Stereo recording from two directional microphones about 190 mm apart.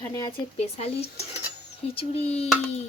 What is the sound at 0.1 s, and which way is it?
Speech, 20° left (ahead or behind).